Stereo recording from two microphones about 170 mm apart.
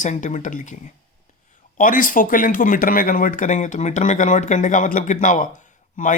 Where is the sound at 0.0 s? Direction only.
45° left (ahead or behind).